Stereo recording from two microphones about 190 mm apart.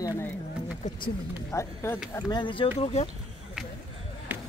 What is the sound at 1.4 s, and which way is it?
Speech, 15° left (ahead or behind).